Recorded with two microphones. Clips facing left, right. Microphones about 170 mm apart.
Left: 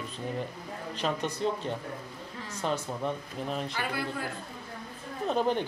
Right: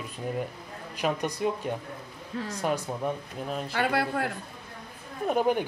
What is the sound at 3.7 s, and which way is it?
Speech, 70° right (ahead or behind).